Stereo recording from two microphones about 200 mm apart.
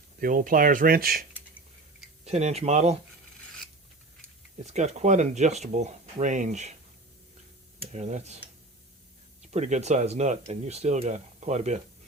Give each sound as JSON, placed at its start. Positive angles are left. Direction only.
{"t": 0.2, "sound": "speech", "side_deg": -45}
{"t": 2.2, "sound": "speech", "side_deg": -35}
{"t": 4.6, "sound": "speech", "side_deg": -35}
{"t": 7.9, "sound": "speech", "side_deg": -35}
{"t": 9.5, "sound": "speech", "side_deg": -35}